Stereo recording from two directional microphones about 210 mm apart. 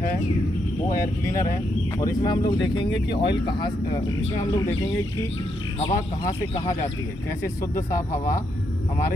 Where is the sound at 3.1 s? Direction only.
55° left (ahead or behind).